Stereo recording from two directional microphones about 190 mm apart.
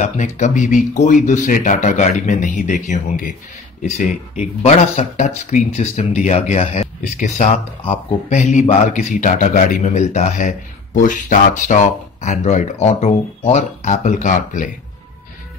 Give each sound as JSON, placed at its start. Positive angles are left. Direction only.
{"t": 0.0, "sound": "speech", "side_deg": 40}